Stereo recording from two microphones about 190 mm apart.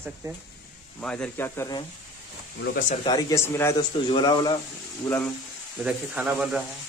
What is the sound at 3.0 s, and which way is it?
Speech, 20° left (ahead or behind).